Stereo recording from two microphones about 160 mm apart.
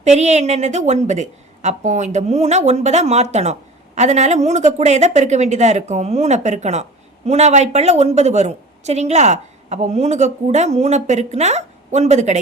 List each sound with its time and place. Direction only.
0.0 s a woman's voice: 45° right (ahead or behind)